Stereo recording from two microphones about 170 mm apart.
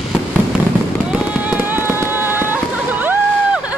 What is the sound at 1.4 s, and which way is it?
Fireworks, 10° right (ahead or behind).